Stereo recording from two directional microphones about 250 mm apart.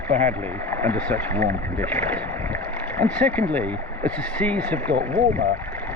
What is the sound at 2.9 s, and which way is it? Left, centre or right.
Speech, centre.